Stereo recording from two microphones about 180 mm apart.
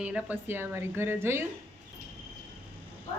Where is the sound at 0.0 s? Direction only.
5° right (ahead or behind).